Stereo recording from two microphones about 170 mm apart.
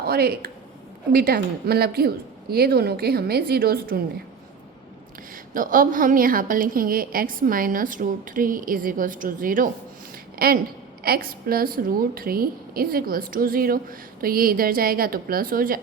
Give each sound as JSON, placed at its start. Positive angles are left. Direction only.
{"t": 0.0, "sound": "a woman's voice", "side_deg": -65}
{"t": 5.3, "sound": "a woman's voice", "side_deg": -55}